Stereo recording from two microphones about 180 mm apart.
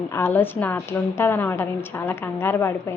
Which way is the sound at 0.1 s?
10° left (ahead or behind).